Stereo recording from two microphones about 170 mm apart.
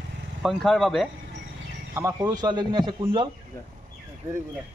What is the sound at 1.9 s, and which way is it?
Speech, 20° right (ahead or behind).